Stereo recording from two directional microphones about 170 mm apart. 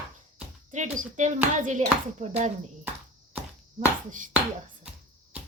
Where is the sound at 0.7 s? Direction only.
45° right (ahead or behind).